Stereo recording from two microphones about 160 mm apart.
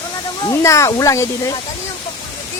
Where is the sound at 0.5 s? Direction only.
20° left (ahead or behind).